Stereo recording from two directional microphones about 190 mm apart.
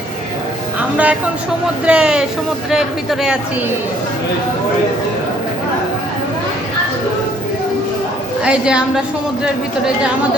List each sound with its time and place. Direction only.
0.8 s speech: 5° right (ahead or behind)
8.4 s speech: 5° right (ahead or behind)